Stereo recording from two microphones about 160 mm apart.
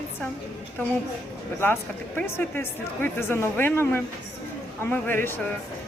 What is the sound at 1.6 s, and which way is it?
Speech, 15° left (ahead or behind).